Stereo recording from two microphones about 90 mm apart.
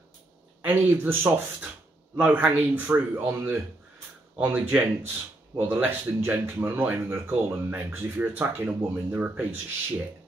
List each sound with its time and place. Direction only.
0.7 s a man's voice: 20° right (ahead or behind)